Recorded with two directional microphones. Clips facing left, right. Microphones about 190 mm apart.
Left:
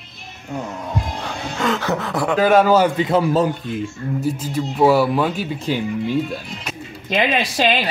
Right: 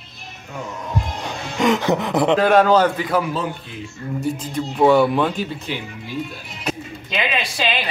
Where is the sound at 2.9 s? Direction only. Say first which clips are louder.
Left 3 dB; 25° left (ahead or behind).